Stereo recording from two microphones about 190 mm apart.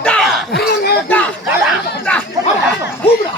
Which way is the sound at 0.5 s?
55° left (ahead or behind).